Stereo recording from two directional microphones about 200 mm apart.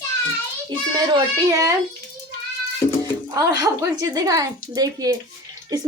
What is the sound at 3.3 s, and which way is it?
A woman's voice, 20° right (ahead or behind).